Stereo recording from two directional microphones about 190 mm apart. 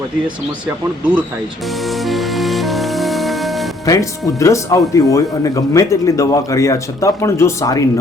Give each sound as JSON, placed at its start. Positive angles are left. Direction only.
{"t": 2.0, "sound": "music", "side_deg": 0}
{"t": 3.8, "sound": "speech", "side_deg": 15}